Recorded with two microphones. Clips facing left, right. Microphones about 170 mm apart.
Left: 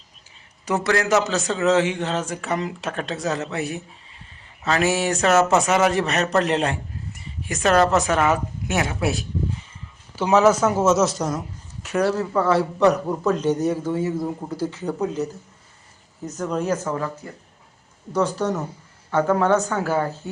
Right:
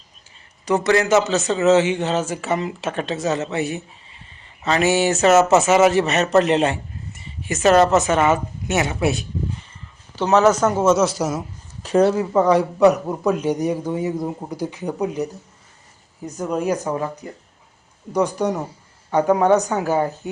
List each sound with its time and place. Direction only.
0.6 s a man's voice: centre (ahead or behind)
11.8 s speech: 30° right (ahead or behind)
12.1 s speech: 20° right (ahead or behind)